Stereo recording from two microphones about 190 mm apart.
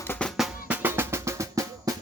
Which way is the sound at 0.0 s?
10° left (ahead or behind).